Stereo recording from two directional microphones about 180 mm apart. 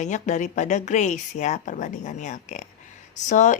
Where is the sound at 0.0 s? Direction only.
40° left (ahead or behind).